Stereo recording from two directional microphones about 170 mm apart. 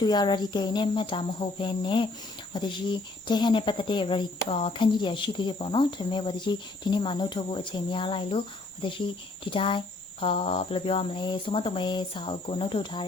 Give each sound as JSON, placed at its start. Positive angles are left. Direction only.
{"t": 0.0, "sound": "speech", "side_deg": 25}